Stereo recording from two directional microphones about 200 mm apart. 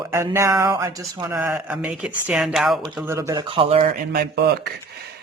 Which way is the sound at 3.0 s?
15° right (ahead or behind).